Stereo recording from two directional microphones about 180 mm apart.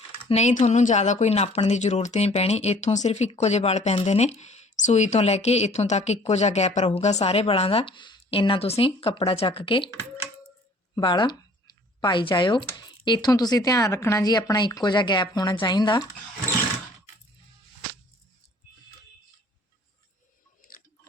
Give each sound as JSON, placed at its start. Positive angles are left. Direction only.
{"t": 0.3, "sound": "speech", "side_deg": 40}
{"t": 10.9, "sound": "speech", "side_deg": 25}